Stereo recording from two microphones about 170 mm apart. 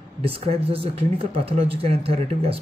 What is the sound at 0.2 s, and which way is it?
Speech, 35° right (ahead or behind).